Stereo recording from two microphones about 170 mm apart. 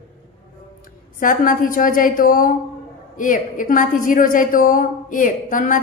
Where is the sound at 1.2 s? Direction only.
50° left (ahead or behind).